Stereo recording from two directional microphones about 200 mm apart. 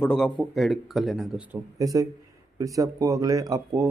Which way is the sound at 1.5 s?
15° right (ahead or behind).